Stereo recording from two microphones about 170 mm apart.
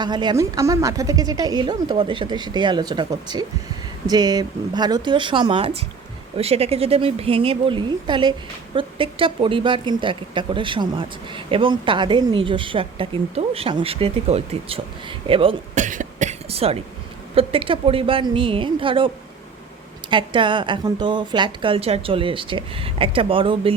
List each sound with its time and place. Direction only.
0.0 s a woman's voice: 25° right (ahead or behind)
15.7 s a woman's voice: 50° right (ahead or behind); by 23.7 s 30° right (ahead or behind)